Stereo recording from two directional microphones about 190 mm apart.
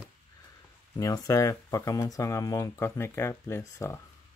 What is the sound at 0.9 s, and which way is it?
Speech, 20° left (ahead or behind).